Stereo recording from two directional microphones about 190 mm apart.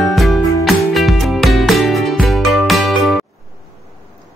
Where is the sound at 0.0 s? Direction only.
Centre (ahead or behind).